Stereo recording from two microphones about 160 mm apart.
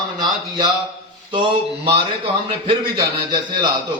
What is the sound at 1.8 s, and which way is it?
A man's voice, 35° right (ahead or behind).